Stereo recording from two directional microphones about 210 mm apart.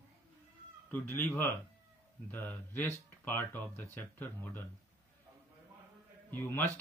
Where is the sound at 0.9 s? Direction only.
10° left (ahead or behind).